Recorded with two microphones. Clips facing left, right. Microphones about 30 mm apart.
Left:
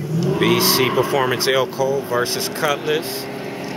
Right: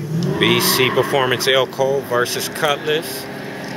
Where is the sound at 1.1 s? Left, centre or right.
Centre.